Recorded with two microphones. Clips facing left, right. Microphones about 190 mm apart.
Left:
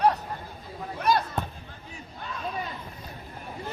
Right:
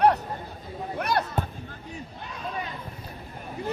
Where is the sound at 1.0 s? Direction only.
65° right (ahead or behind).